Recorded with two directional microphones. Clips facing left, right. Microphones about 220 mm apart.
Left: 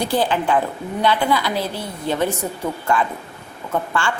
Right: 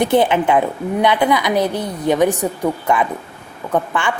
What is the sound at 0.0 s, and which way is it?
A woman's voice, 20° right (ahead or behind).